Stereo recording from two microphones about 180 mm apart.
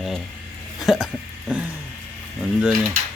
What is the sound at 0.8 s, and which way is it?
Hiccup, centre (ahead or behind).